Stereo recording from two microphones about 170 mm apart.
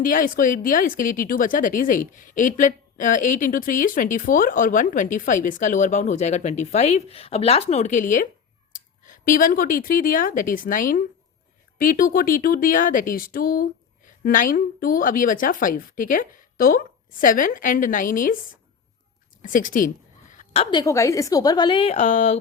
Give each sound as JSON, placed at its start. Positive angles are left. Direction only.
{"t": 0.0, "sound": "a woman's voice", "side_deg": 55}
{"t": 19.4, "sound": "speech", "side_deg": 55}
{"t": 20.3, "sound": "a sound", "side_deg": 45}
{"t": 20.7, "sound": "a woman's voice", "side_deg": 20}